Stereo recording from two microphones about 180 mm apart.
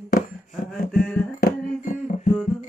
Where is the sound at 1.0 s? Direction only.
5° left (ahead or behind).